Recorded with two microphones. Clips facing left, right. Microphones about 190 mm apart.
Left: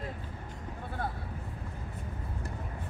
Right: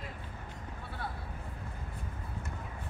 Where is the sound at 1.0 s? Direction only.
50° left (ahead or behind).